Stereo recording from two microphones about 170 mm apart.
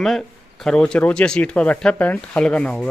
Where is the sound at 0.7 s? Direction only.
5° left (ahead or behind).